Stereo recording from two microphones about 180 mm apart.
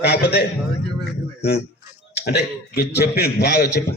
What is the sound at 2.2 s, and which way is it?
A man's voice, 65° left (ahead or behind).